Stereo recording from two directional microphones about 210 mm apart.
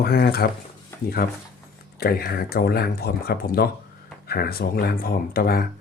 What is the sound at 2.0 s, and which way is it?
Speech, 45° left (ahead or behind).